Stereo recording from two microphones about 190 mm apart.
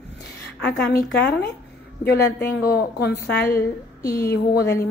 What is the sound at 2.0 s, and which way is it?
A woman's voice, 55° left (ahead or behind).